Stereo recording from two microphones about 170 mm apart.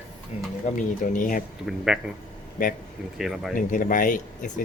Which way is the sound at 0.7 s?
50° left (ahead or behind).